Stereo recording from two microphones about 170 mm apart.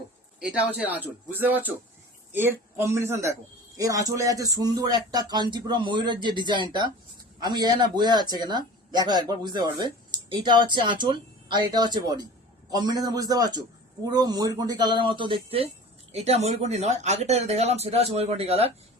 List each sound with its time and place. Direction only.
0.3 s a man's voice: 5° right (ahead or behind); by 18.7 s 35° right (ahead or behind)